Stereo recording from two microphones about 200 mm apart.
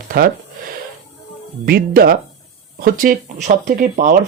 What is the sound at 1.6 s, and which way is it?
Speech, 50° right (ahead or behind).